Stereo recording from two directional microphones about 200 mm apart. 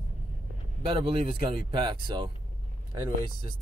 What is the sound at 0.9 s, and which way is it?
Speech, 25° right (ahead or behind).